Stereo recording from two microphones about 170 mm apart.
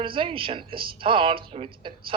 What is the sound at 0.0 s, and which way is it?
A woman's voice, 30° right (ahead or behind).